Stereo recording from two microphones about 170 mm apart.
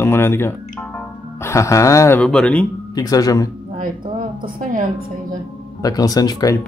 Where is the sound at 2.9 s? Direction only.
20° left (ahead or behind).